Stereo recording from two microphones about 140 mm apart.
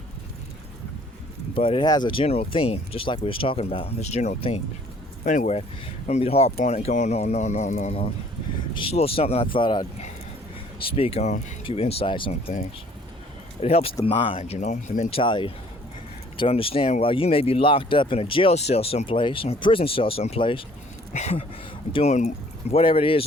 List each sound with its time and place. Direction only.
1.5 s speech: 40° left (ahead or behind)
5.2 s speech: 65° left (ahead or behind)
6.1 s speech: 45° left (ahead or behind)
8.7 s speech: 40° left (ahead or behind)
10.8 s speech: 40° left (ahead or behind)
11.6 s speech: 45° left (ahead or behind)
13.6 s speech: 45° left (ahead or behind); by 15.1 s 60° left (ahead or behind)
15.1 s speech: 35° left (ahead or behind)
21.1 s speech: 55° left (ahead or behind)
22.7 s speech: 40° left (ahead or behind)